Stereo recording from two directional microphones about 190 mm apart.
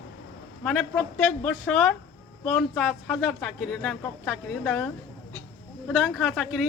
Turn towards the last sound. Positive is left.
turn(degrees=0)  # may be behind; listen again after turning